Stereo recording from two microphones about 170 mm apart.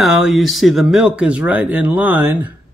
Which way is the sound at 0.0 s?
Centre (ahead or behind).